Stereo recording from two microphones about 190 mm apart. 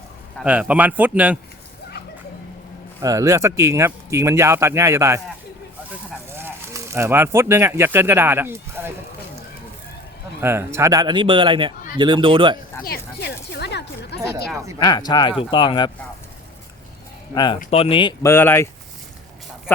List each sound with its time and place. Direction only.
0.3 s speech: 5° right (ahead or behind)
3.0 s speech: 15° right (ahead or behind)
6.3 s speech: 10° right (ahead or behind)
10.4 s speech: 15° right (ahead or behind)
12.8 s a sound: 55° left (ahead or behind)
14.8 s speech: 20° left (ahead or behind)
17.3 s speech: 25° left (ahead or behind)
18.2 s speech: 10° left (ahead or behind)